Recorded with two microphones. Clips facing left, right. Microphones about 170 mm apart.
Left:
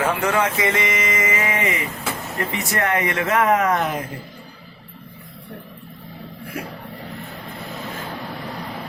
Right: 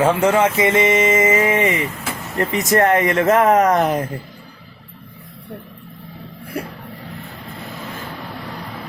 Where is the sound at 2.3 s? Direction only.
40° right (ahead or behind).